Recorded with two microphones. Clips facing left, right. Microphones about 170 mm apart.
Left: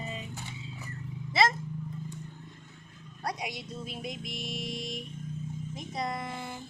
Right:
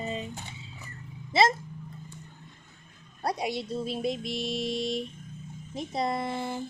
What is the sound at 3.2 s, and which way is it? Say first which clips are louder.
Speech: right 6 dB; 30° right (ahead or behind).